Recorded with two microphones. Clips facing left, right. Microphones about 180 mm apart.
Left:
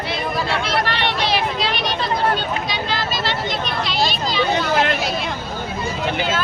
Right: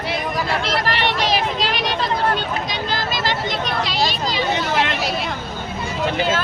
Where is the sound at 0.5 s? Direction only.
40° right (ahead or behind).